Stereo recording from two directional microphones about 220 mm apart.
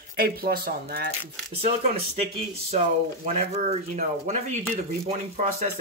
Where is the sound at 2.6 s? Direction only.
30° right (ahead or behind).